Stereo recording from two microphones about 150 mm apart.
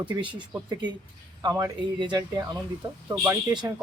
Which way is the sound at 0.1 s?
30° right (ahead or behind).